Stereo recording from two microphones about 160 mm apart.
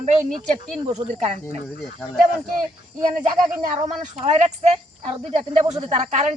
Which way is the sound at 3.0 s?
50° right (ahead or behind).